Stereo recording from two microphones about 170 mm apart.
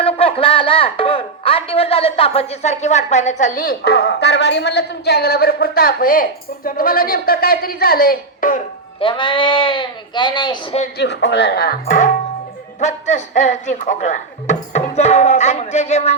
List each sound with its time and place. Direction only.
0.0 s a woman's voice: 35° left (ahead or behind); by 8.6 s 50° left (ahead or behind)
9.0 s speech: 30° left (ahead or behind)
10.9 s speech: 85° left; by 16.1 s 40° left (ahead or behind)